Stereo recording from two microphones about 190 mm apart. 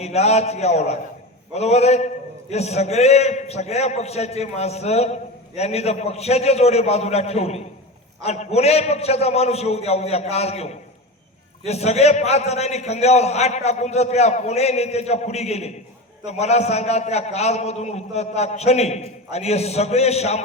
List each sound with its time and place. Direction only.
0.0 s a man's voice: 35° left (ahead or behind)